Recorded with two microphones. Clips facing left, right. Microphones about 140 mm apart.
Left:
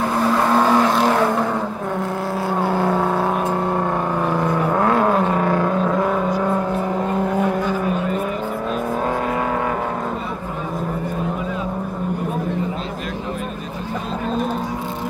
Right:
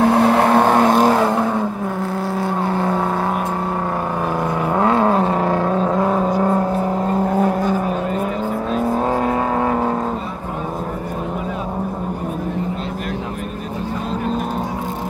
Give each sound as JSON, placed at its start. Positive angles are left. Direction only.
{"t": 0.0, "sound": "vehicle", "side_deg": -70}
{"t": 2.6, "sound": "vehicle", "side_deg": 0}
{"t": 4.3, "sound": "vehicle", "side_deg": -10}
{"t": 7.3, "sound": "vehicle", "side_deg": -40}